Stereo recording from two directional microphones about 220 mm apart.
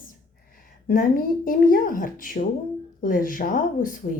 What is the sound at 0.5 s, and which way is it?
A woman's voice, 40° left (ahead or behind).